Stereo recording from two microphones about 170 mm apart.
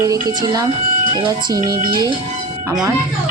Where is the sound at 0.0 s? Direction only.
20° right (ahead or behind).